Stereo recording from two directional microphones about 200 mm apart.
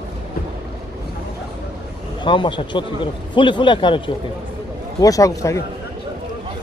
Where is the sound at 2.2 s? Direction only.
25° left (ahead or behind).